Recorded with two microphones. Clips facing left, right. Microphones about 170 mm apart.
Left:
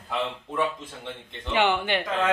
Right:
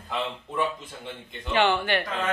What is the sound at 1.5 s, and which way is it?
Speech, 15° left (ahead or behind).